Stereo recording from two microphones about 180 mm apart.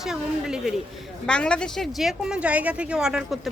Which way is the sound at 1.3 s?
5° left (ahead or behind).